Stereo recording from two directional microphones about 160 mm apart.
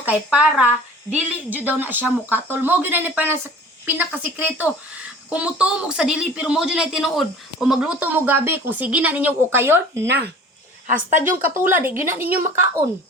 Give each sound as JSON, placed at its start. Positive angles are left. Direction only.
{"t": 0.0, "sound": "speech", "side_deg": -10}
{"t": 10.8, "sound": "a woman's voice", "side_deg": -55}
{"t": 11.3, "sound": "speech", "side_deg": -15}